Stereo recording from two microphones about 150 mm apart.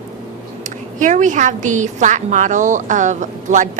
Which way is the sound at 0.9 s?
55° right (ahead or behind).